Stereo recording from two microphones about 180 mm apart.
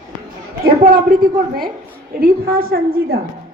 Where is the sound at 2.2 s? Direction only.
55° right (ahead or behind).